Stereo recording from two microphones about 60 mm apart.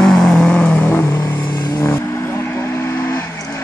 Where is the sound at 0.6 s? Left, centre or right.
Left.